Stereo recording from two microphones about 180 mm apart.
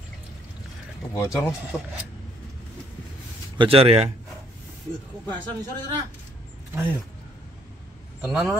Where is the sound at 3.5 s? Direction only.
30° right (ahead or behind).